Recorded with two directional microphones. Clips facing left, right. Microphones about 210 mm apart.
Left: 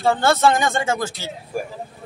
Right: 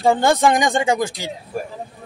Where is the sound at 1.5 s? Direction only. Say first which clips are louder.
Left 1 dB; 10° left (ahead or behind).